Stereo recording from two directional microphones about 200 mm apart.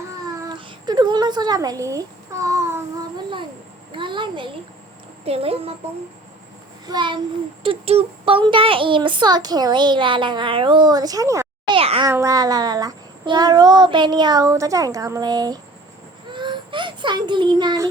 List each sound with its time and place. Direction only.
0.4 s a sound: 20° right (ahead or behind)
3.9 s speech: 25° right (ahead or behind)
6.8 s speech: 20° right (ahead or behind)
11.8 s a sound: 30° right (ahead or behind)
12.0 s speech: 15° right (ahead or behind)
16.3 s child singing: 25° right (ahead or behind)